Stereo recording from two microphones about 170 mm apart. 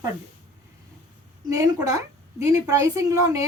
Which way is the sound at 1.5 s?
20° right (ahead or behind).